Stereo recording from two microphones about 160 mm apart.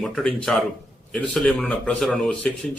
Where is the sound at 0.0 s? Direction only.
5° left (ahead or behind).